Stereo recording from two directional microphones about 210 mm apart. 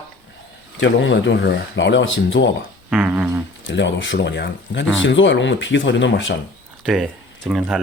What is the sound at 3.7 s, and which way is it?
Speech, 60° left (ahead or behind).